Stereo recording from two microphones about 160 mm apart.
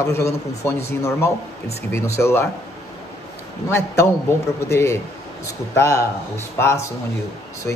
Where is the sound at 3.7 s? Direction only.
15° left (ahead or behind).